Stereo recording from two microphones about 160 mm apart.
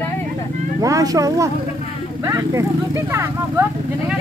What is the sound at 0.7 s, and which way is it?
Speech, 20° right (ahead or behind).